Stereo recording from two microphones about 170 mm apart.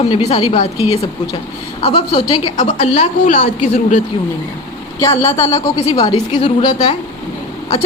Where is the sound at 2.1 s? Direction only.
35° left (ahead or behind).